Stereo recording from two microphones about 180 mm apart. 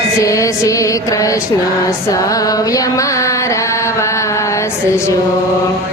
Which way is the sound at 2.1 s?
20° left (ahead or behind).